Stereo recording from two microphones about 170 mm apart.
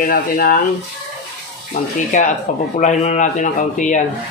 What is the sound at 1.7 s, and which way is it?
Speech, 45° left (ahead or behind).